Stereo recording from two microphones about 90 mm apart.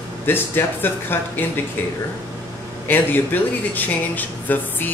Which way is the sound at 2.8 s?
20° left (ahead or behind).